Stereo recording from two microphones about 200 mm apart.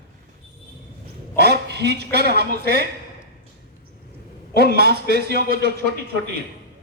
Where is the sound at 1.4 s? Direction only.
55° right (ahead or behind).